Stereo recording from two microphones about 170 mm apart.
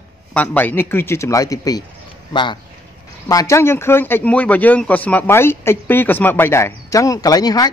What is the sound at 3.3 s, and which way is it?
Speech, 20° left (ahead or behind).